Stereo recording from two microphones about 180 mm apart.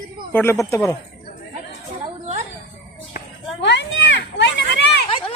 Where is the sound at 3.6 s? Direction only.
80° left.